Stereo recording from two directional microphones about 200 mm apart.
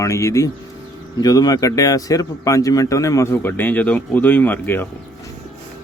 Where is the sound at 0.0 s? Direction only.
15° left (ahead or behind).